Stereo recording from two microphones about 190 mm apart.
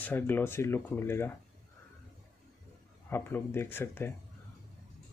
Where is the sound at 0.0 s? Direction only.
10° left (ahead or behind).